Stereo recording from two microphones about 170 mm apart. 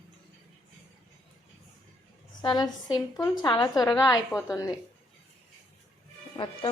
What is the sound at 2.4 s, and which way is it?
A woman's voice, 25° left (ahead or behind).